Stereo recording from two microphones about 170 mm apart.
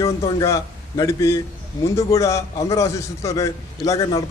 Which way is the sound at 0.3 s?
20° left (ahead or behind).